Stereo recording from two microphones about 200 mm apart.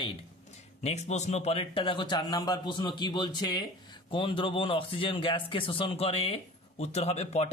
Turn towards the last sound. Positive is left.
turn(degrees=30)  # may be behind; listen again after turning